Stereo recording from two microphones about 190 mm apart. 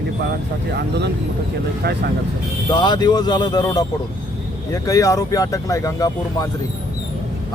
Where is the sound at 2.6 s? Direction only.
20° left (ahead or behind).